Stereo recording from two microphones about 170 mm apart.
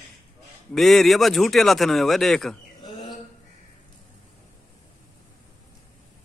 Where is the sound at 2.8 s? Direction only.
25° left (ahead or behind).